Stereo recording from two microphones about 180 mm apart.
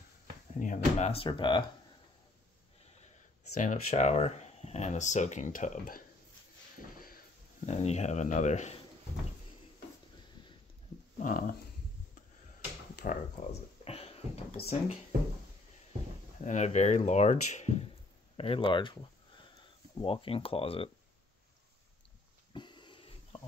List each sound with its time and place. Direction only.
0.6 s speech: 40° left (ahead or behind)
3.6 s speech: 40° left (ahead or behind)
7.6 s speech: 40° left (ahead or behind)
11.1 s dog: 50° left (ahead or behind)
13.0 s a sound: 45° left (ahead or behind)
16.3 s speech: 40° left (ahead or behind); by 18.9 s 25° left (ahead or behind)
20.0 s speech: 30° left (ahead or behind)
22.5 s a sound: 25° left (ahead or behind)